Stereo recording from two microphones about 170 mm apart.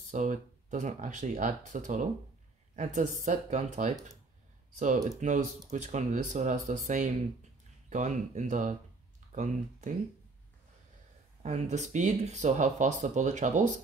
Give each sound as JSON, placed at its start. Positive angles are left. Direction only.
{"t": 0.1, "sound": "speech", "side_deg": -50}
{"t": 5.2, "sound": "speech", "side_deg": -45}
{"t": 11.4, "sound": "speech", "side_deg": -40}